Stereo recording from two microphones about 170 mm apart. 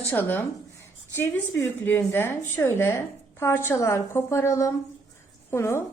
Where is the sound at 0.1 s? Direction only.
10° left (ahead or behind).